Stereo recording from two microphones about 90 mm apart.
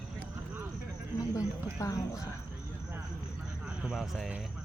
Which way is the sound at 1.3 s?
40° left (ahead or behind).